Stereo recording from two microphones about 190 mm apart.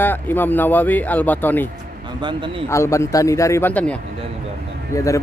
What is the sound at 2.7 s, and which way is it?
A man's voice, 15° left (ahead or behind).